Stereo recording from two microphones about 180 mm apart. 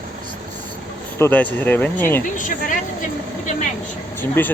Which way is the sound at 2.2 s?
45° left (ahead or behind).